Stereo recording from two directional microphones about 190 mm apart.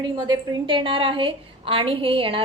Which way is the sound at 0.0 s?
25° right (ahead or behind).